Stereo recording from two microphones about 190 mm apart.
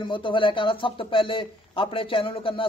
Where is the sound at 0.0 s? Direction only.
25° left (ahead or behind).